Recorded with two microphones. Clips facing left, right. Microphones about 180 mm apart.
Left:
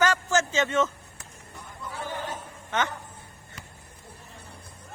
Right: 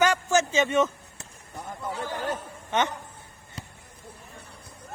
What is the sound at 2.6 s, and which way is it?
Speech, 20° right (ahead or behind).